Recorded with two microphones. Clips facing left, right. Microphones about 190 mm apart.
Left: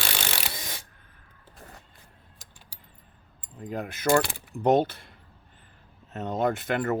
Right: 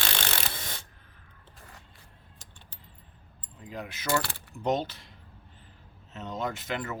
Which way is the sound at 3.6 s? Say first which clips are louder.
Left 8 dB; 50° left (ahead or behind).